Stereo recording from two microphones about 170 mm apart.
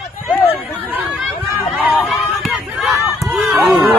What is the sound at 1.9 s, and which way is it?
Run, centre (ahead or behind).